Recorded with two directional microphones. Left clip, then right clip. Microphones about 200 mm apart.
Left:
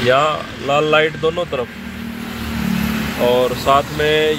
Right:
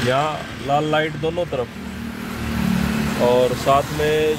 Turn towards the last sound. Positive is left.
turn(degrees=5)  # may be behind; listen again after turning